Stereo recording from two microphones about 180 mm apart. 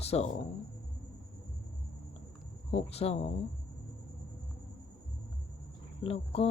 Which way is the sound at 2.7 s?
35° left (ahead or behind).